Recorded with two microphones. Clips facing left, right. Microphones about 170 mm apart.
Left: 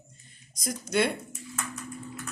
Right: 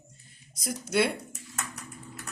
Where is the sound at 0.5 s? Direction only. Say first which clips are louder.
Even; 10° right (ahead or behind).